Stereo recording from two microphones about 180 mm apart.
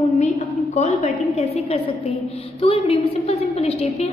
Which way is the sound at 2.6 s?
35° left (ahead or behind).